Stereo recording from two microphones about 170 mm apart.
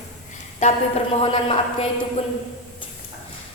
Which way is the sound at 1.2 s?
30° left (ahead or behind).